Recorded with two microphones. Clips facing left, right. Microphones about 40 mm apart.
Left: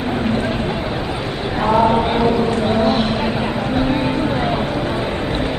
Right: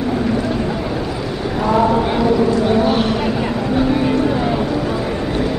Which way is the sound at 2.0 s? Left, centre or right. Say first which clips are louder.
Right 1 dB; left.